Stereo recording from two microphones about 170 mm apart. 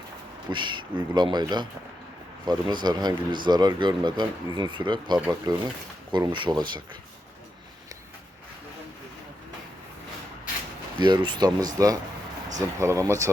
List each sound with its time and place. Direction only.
0.5 s speech: 25° right (ahead or behind)
11.0 s speech: 25° right (ahead or behind)